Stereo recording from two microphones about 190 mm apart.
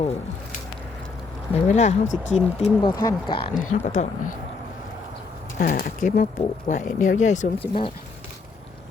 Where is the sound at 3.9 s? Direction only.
45° left (ahead or behind).